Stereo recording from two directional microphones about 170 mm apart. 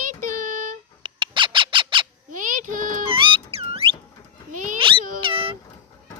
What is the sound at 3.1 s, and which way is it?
Music, 30° right (ahead or behind).